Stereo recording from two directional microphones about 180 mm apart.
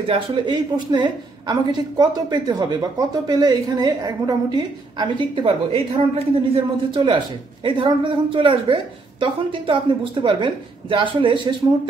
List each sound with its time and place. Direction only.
0.0 s a woman's voice: 30° right (ahead or behind)